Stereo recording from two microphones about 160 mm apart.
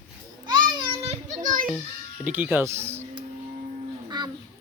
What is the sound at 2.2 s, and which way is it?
Speech, 10° right (ahead or behind).